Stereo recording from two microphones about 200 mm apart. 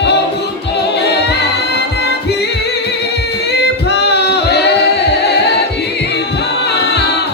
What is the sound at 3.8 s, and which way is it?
Music, 55° left (ahead or behind).